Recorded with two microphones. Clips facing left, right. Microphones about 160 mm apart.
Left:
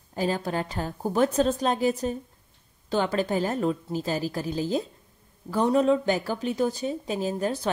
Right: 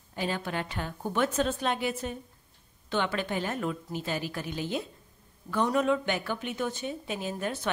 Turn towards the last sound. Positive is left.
turn(degrees=35)  # may be behind; listen again after turning